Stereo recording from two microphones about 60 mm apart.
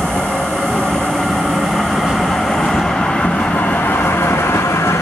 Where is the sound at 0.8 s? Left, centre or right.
Centre.